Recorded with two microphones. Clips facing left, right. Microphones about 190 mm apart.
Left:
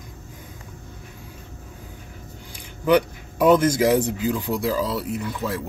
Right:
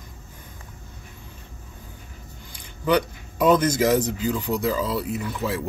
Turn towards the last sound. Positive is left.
turn(degrees=0)  # may be behind; listen again after turning